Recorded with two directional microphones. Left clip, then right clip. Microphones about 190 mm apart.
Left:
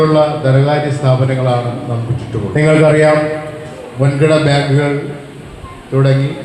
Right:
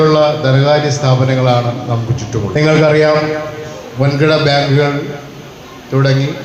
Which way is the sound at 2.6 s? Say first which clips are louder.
Even; 30° right (ahead or behind).